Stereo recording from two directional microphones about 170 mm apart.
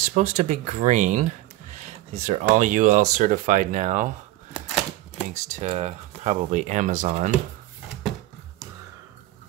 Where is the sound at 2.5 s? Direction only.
45° right (ahead or behind).